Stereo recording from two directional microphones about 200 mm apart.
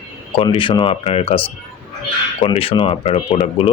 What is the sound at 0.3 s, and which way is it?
Speech, 25° left (ahead or behind).